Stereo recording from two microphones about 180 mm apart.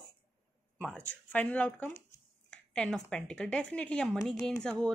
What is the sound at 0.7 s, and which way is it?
Speech, 5° left (ahead or behind).